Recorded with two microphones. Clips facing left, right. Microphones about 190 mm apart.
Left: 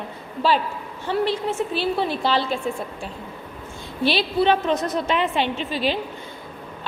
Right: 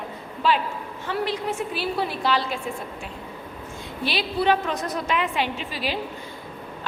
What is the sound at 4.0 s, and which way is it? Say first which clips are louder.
A woman's voice: left 5 dB; 30° left (ahead or behind).